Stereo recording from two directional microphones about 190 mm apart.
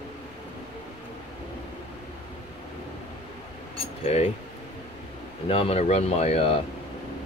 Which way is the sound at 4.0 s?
35° left (ahead or behind).